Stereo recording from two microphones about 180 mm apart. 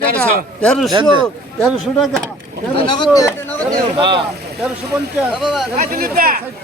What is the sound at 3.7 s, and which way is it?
Speech, 25° right (ahead or behind).